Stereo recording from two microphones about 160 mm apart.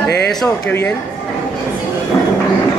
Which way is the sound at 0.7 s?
15° left (ahead or behind).